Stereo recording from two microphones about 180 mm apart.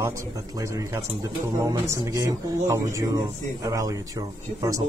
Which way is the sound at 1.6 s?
15° right (ahead or behind).